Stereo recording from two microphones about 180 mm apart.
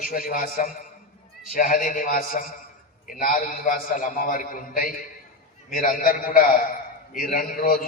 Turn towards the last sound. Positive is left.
turn(degrees=50)  # may be behind; listen again after turning